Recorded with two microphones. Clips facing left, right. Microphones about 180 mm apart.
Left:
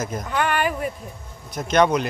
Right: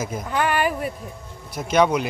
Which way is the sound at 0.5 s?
40° right (ahead or behind).